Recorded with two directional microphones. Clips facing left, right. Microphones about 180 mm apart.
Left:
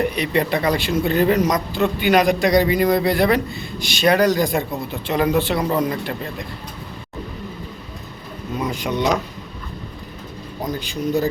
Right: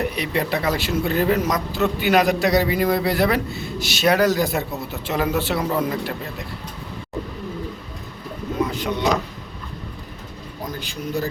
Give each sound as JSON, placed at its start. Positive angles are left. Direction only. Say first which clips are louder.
{"t": 0.0, "sound": "speech", "louder": "left 3 dB", "side_deg": -5}
{"t": 8.6, "sound": "a sound", "louder": "left 3 dB", "side_deg": 15}
{"t": 10.7, "sound": "speech", "louder": "left 6 dB", "side_deg": 20}